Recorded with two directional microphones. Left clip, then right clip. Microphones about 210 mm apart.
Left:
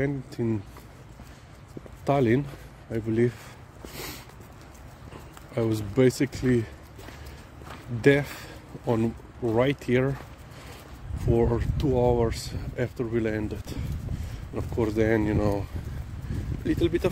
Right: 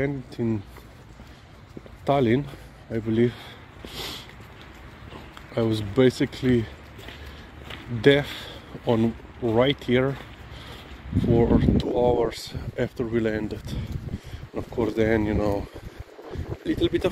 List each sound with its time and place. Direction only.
0.0 s speech: 10° left (ahead or behind)
2.0 s speech: 10° left (ahead or behind)
3.9 s a sound: 5° left (ahead or behind)
5.5 s speech: 5° left (ahead or behind)
8.0 s speech: 5° left (ahead or behind)
11.3 s speech: 5° left (ahead or behind)
16.6 s speech: centre (ahead or behind)